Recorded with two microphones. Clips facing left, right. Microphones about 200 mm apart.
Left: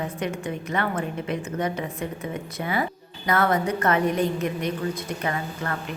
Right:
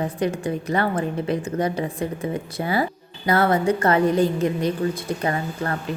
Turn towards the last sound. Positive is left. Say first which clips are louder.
# right 4 dB
turn(degrees=-35)  # may be behind; listen again after turning